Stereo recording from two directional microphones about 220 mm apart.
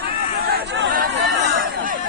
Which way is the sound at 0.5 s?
50° right (ahead or behind).